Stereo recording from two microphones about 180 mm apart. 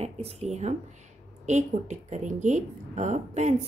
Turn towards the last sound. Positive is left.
turn(degrees=-40)  # may be behind; listen again after turning